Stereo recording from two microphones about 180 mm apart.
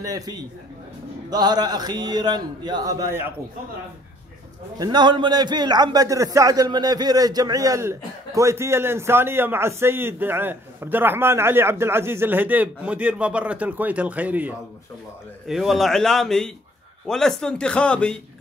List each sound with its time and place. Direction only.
0.0 s a man's voice: 20° right (ahead or behind)
4.7 s a man's voice: 20° right (ahead or behind); by 18.2 s 5° left (ahead or behind)